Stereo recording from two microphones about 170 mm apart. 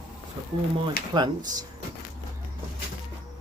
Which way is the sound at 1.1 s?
25° right (ahead or behind).